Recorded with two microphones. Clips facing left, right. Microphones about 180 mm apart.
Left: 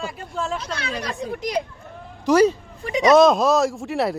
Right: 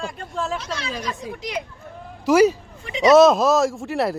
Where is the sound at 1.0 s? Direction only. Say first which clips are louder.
Left 2 dB; 60° left (ahead or behind).